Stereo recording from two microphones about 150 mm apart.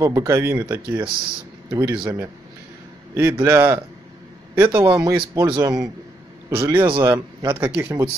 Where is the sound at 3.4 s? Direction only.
15° right (ahead or behind).